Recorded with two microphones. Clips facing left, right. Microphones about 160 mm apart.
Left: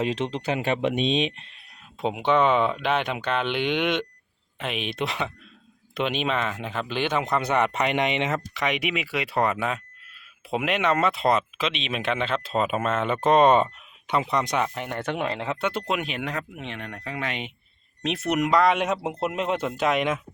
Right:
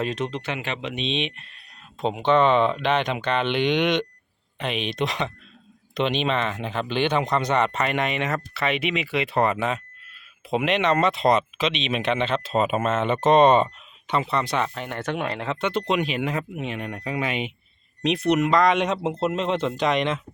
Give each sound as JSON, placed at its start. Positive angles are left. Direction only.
{"t": 0.0, "sound": "speech", "side_deg": 25}
{"t": 0.8, "sound": "speech", "side_deg": 50}
{"t": 2.0, "sound": "speech", "side_deg": 10}
{"t": 18.0, "sound": "speech", "side_deg": 5}
{"t": 18.3, "sound": "speech", "side_deg": 15}